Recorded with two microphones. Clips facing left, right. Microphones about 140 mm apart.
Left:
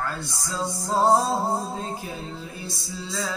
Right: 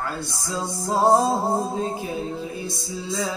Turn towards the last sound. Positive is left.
turn(degrees=-15)  # may be behind; listen again after turning